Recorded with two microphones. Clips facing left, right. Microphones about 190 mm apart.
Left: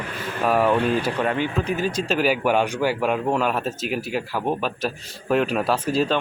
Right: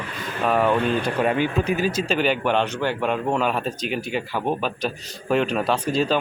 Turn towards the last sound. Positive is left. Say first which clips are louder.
# even
turn(degrees=5)  # may be behind; listen again after turning